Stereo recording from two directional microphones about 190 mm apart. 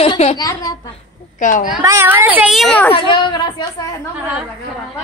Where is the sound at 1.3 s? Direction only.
40° left (ahead or behind).